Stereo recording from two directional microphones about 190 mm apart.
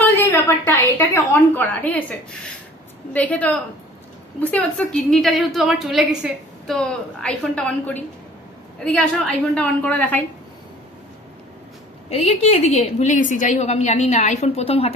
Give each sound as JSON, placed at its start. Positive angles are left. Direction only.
{"t": 0.0, "sound": "a woman's voice", "side_deg": 10}
{"t": 12.1, "sound": "a woman's voice", "side_deg": 35}